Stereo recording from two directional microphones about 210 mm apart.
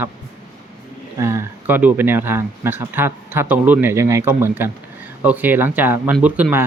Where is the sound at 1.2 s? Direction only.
15° right (ahead or behind).